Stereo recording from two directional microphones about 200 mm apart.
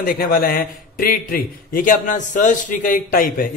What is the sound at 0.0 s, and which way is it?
A man's voice, 45° left (ahead or behind).